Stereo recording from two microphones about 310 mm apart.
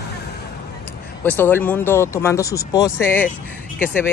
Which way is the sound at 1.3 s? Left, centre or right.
Centre.